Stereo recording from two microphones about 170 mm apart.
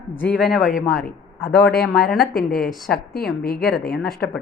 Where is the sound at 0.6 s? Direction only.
50° left (ahead or behind).